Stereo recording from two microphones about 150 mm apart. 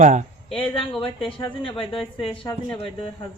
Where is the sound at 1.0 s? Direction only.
35° left (ahead or behind).